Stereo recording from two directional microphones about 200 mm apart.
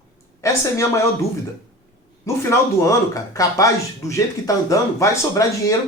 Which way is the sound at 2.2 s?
15° left (ahead or behind).